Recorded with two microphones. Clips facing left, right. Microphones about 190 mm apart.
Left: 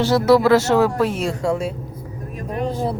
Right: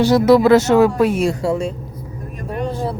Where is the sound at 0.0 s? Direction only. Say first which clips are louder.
Right 3 dB; 15° right (ahead or behind).